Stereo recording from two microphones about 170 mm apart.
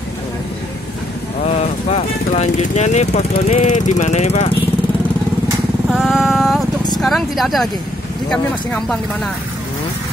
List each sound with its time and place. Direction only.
1.4 s speech: 40° left (ahead or behind)
5.9 s speech: centre (ahead or behind)